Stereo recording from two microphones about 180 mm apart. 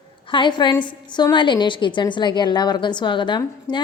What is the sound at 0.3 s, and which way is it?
A woman's voice, 25° left (ahead or behind).